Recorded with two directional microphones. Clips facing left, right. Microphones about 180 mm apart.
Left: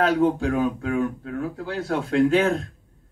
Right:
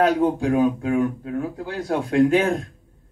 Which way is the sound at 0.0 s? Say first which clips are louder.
Right 1 dB; 15° right (ahead or behind).